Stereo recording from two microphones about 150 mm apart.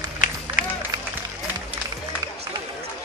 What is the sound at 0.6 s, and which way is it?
Run, 65° left (ahead or behind).